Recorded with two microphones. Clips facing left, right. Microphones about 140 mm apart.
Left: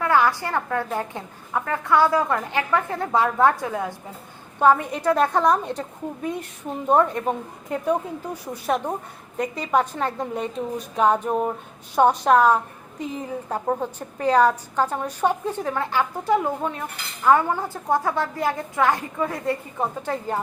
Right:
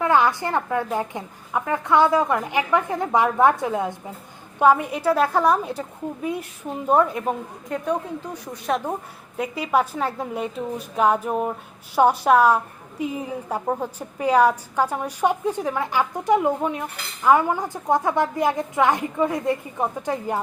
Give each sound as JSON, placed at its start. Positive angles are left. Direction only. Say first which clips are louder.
{"t": 0.0, "sound": "a woman's voice", "louder": "right 1 dB", "side_deg": -20}
{"t": 4.6, "sound": "a woman's voice", "louder": "right 1 dB", "side_deg": -10}
{"t": 6.8, "sound": "a woman's voice", "louder": "even", "side_deg": -5}
{"t": 7.9, "sound": "a woman's voice", "louder": "left 2 dB", "side_deg": 5}